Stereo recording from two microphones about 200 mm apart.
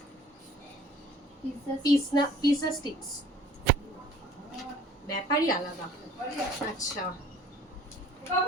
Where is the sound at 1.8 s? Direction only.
20° left (ahead or behind).